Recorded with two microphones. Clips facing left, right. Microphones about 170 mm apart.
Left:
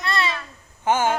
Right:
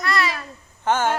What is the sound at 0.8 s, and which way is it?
Speech, 10° left (ahead or behind).